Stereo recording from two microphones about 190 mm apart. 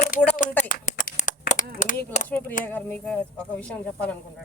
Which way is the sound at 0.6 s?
45° left (ahead or behind).